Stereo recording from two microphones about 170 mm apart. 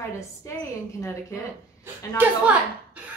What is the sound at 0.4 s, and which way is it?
Speech, 15° left (ahead or behind).